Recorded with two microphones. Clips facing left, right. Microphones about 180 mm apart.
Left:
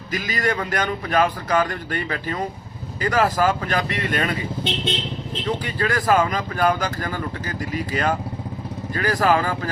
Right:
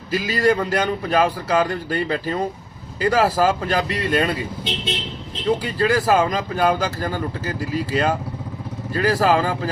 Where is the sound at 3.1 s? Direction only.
10° right (ahead or behind).